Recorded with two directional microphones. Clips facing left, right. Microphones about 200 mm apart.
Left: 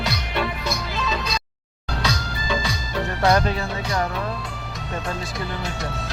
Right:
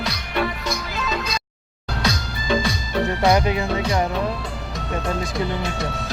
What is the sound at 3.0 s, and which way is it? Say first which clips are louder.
Speech: right 1 dB; 15° right (ahead or behind).